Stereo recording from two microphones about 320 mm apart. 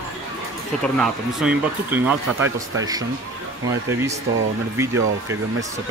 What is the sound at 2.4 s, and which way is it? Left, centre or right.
Speech, right.